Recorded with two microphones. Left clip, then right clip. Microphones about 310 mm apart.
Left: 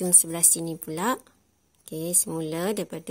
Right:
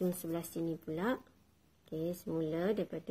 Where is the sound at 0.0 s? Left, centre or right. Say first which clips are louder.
Left 12 dB; left.